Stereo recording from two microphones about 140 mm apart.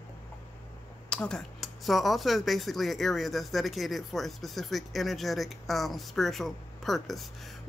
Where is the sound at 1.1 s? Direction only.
5° left (ahead or behind).